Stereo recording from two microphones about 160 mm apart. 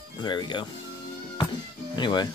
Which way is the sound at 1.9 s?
30° left (ahead or behind).